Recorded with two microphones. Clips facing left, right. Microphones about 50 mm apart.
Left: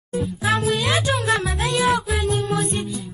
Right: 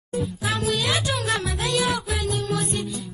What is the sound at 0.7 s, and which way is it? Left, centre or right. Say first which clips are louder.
Music: left 3 dB; left.